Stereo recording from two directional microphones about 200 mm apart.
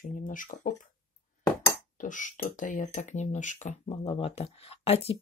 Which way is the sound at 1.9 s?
40° left (ahead or behind).